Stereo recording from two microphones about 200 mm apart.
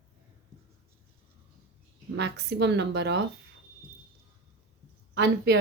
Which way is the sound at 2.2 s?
55° right (ahead or behind).